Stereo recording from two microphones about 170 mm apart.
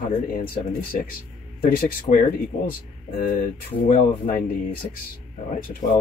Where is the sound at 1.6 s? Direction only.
55° left (ahead or behind).